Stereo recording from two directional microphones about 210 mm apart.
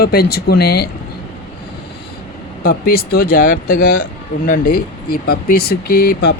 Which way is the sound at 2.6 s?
45° left (ahead or behind).